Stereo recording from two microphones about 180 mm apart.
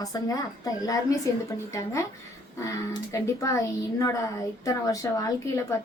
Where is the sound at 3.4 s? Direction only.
15° left (ahead or behind).